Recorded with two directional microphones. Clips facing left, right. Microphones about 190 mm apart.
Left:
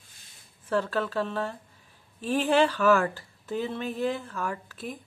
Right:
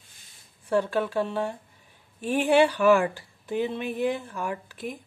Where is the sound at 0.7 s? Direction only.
15° right (ahead or behind).